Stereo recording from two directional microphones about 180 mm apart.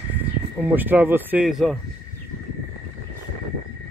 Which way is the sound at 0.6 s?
10° right (ahead or behind).